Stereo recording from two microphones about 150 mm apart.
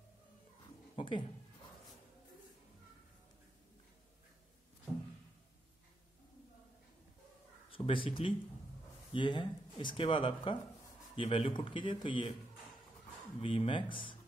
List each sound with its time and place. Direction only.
0.9 s a sound: 35° left (ahead or behind)
7.7 s speech: 35° left (ahead or behind)
13.4 s speech: 35° left (ahead or behind)